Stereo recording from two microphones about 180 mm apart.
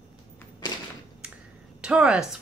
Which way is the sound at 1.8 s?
5° right (ahead or behind).